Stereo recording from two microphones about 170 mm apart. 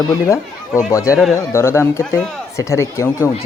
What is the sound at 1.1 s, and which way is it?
Speech, centre (ahead or behind).